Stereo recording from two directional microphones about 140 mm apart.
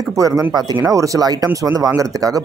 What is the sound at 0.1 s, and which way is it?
Speech, 25° right (ahead or behind).